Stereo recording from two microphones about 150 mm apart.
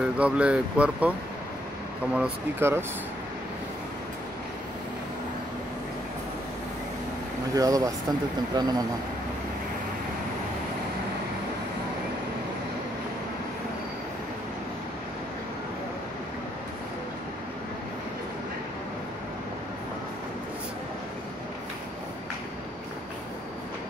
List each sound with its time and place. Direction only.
0.0 s speech: 5° right (ahead or behind)
2.1 s speech: 10° right (ahead or behind)
7.5 s speech: 25° right (ahead or behind)